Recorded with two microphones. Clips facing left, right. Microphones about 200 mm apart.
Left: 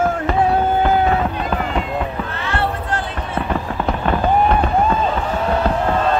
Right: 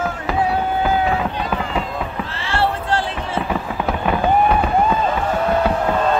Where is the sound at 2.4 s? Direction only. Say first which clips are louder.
Right 3 dB; 30° right (ahead or behind).